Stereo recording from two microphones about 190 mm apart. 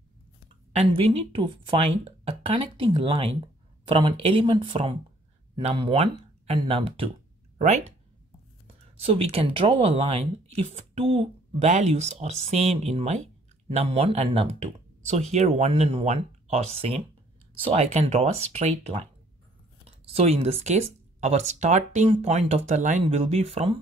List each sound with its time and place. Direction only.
0.7 s speech: 30° right (ahead or behind)
20.1 s speech: 30° right (ahead or behind)